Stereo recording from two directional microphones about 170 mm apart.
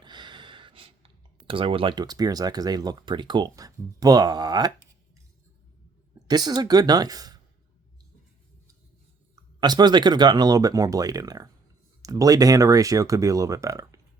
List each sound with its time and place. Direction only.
0.0 s speech: 25° right (ahead or behind)
6.2 s speech: 25° right (ahead or behind)
9.3 s speech: 25° right (ahead or behind)